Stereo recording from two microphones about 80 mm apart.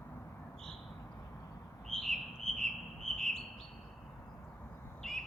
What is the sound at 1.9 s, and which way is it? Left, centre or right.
Bird, centre.